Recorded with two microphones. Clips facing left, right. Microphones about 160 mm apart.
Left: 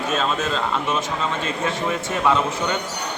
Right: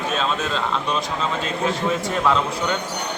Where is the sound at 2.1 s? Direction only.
5° left (ahead or behind).